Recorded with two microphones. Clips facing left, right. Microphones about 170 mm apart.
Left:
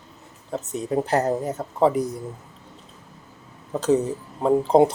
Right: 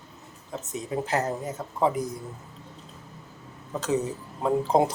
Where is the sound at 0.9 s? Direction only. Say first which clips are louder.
Left 6 dB; 35° left (ahead or behind).